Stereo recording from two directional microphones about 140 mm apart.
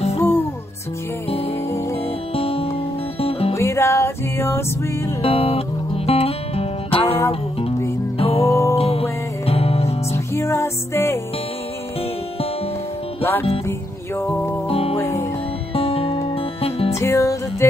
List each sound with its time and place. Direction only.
0.2 s music: 15° left (ahead or behind)
2.3 s music: 45° left (ahead or behind)
3.5 s music: 20° left (ahead or behind)
5.2 s music: 45° left (ahead or behind)
8.2 s music: 45° left (ahead or behind)
8.5 s music: 20° left (ahead or behind)
8.7 s music: 45° left (ahead or behind)
10.1 s music: 20° left (ahead or behind)
13.2 s music: 15° left (ahead or behind)
14.7 s music: 45° left (ahead or behind)
15.0 s music: 20° left (ahead or behind)
15.7 s music: 45° left (ahead or behind)
16.9 s music: 20° left (ahead or behind)